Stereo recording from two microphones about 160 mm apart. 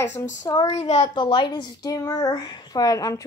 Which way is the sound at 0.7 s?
45° left (ahead or behind).